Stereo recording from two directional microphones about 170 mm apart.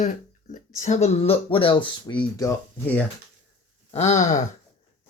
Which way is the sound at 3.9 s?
40° left (ahead or behind).